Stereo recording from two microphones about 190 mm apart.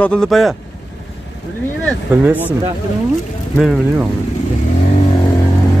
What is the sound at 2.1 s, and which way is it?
Speech, 10° right (ahead or behind).